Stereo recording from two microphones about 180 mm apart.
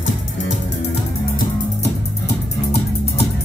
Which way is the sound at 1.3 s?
70° left (ahead or behind).